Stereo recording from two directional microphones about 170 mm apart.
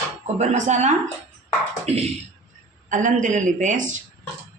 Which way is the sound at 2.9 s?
50° right (ahead or behind).